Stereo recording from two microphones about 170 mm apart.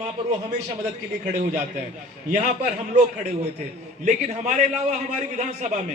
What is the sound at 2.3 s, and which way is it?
A man's voice, 45° right (ahead or behind).